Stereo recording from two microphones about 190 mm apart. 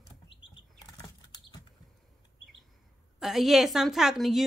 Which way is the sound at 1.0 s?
20° left (ahead or behind).